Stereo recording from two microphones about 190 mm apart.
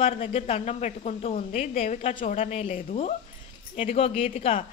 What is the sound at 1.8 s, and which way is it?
A woman's voice, 30° left (ahead or behind).